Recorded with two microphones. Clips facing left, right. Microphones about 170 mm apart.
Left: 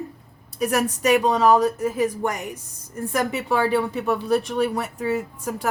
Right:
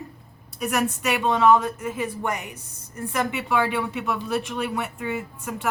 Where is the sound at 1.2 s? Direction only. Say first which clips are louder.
Right 3 dB; 40° left (ahead or behind).